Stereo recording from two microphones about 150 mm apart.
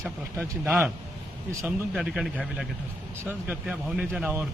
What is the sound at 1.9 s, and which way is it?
A man's voice, 5° right (ahead or behind).